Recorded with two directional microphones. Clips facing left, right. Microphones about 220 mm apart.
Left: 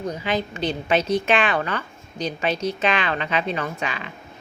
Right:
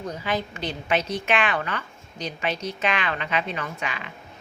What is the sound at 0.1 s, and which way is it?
A woman's voice, 20° left (ahead or behind).